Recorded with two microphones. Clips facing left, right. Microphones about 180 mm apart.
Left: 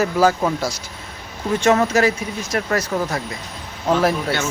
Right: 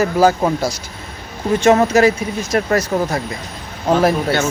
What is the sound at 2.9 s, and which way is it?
A man's voice, 30° right (ahead or behind).